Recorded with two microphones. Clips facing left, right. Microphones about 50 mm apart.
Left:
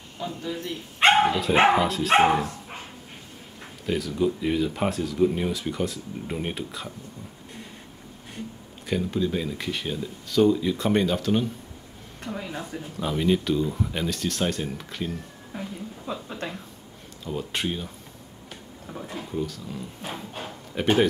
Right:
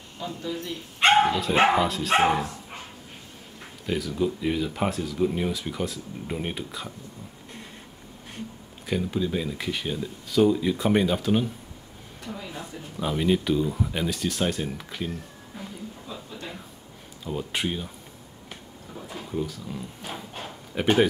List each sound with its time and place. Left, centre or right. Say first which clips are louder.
0.2 s a man's voice: left 1 dB; centre
1.0 s dog: left 1 dB; centre
1.7 s speech: left 2 dB; centre
3.8 s speech: left 2 dB; centre
8.8 s speech: left 1 dB; centre
12.3 s a man's voice: left 4 dB; centre
16.1 s a sound: left 10 dB; left
17.2 s speech: even; centre
19.0 s a sound: even; centre
19.4 s speech: even; centre
20.1 s bow-wow: left 2 dB; centre